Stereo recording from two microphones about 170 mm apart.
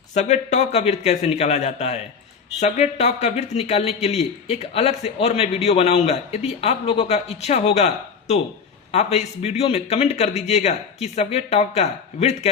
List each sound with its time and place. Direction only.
0.1 s a man's voice: 45° left (ahead or behind)